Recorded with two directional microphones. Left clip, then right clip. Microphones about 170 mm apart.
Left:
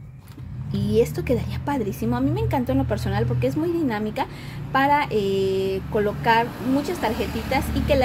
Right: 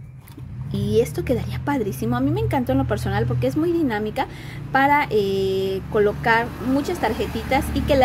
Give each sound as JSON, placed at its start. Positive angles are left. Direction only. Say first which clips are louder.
{"t": 0.7, "sound": "a woman's voice", "louder": "right 1 dB", "side_deg": -20}